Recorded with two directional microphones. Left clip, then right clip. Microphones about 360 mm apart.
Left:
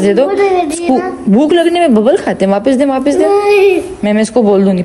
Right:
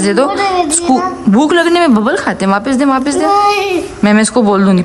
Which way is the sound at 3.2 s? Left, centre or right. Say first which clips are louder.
Right 2 dB; right.